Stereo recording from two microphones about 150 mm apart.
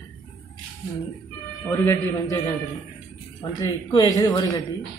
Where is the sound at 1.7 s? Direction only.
20° left (ahead or behind).